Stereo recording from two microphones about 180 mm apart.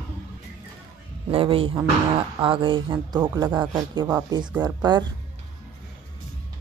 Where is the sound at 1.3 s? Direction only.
30° right (ahead or behind).